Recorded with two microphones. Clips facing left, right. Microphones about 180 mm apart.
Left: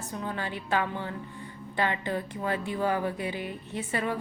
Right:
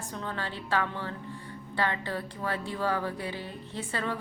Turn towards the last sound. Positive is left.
turn(degrees=15)  # may be behind; listen again after turning